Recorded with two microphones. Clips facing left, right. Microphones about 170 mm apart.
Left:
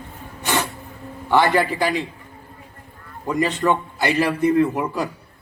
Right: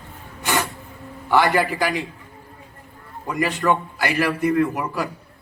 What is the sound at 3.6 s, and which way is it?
A man's voice, 20° left (ahead or behind).